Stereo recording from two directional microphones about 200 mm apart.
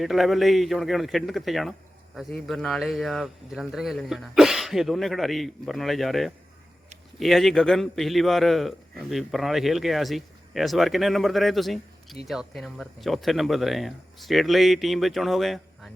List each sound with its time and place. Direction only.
0.0 s a man's voice: centre (ahead or behind)